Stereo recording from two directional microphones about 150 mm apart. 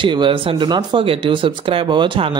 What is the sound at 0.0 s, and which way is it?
Speech, 30° right (ahead or behind).